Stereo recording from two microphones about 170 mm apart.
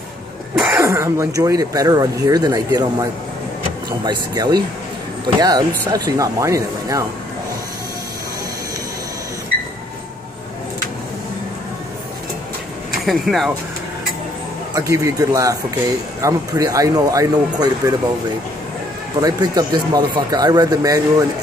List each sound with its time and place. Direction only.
0.7 s speech: 15° right (ahead or behind)
13.0 s speech: centre (ahead or behind)
14.7 s speech: 20° right (ahead or behind)
19.2 s speech: 25° right (ahead or behind)